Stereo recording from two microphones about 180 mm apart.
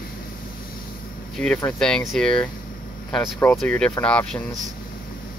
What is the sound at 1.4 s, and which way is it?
Speech, 5° left (ahead or behind).